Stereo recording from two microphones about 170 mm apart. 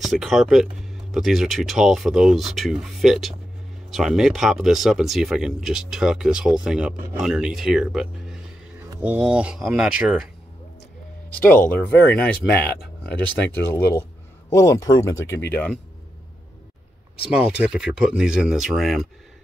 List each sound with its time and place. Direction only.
0.0 s speech: centre (ahead or behind)
11.7 s speech: 10° left (ahead or behind)
17.3 s speech: 5° right (ahead or behind)